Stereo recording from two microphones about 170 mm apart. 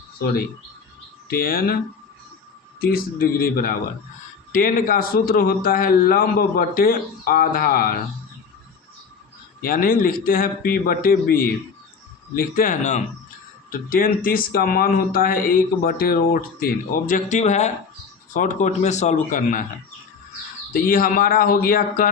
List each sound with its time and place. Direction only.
1.3 s speech: 60° left (ahead or behind)
2.8 s speech: 60° left (ahead or behind)
9.6 s speech: 55° left (ahead or behind)
20.7 s speech: 55° left (ahead or behind)